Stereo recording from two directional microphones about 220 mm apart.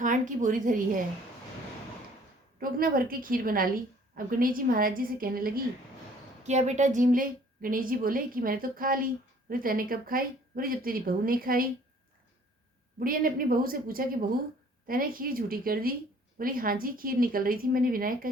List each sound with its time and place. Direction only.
0.0 s a woman's voice: 35° right (ahead or behind)
2.6 s a woman's voice: 40° right (ahead or behind)
6.4 s a woman's voice: 30° right (ahead or behind)
13.0 s a woman's voice: 40° right (ahead or behind)